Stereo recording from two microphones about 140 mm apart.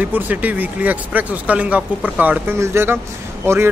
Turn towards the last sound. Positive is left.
turn(degrees=-15)  # may be behind; listen again after turning